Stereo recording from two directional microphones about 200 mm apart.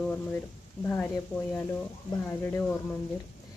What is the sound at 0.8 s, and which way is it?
Speech, 10° left (ahead or behind).